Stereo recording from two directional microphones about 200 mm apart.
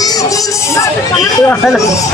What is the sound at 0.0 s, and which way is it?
Speech, 15° left (ahead or behind).